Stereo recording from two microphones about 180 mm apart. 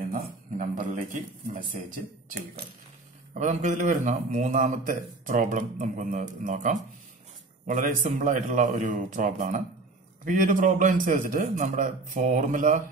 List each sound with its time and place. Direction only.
0.1 s a man's voice: 45° right (ahead or behind)
3.3 s a man's voice: 40° right (ahead or behind)